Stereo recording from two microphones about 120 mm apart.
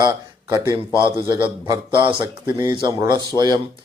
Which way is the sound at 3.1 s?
35° right (ahead or behind).